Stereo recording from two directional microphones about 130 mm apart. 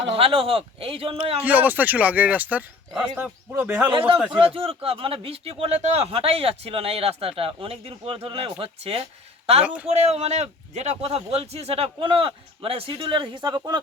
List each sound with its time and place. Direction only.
0.1 s speech: 45° right (ahead or behind)
1.4 s speech: 10° right (ahead or behind)
3.9 s speech: 45° right (ahead or behind)